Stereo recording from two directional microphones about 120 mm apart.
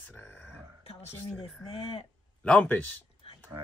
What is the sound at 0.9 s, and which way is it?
Speech, 55° left (ahead or behind).